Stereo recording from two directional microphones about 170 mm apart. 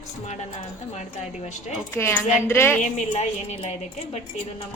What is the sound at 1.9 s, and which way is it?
Speech, 15° left (ahead or behind).